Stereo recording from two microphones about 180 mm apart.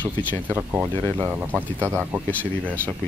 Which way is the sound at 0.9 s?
20° right (ahead or behind).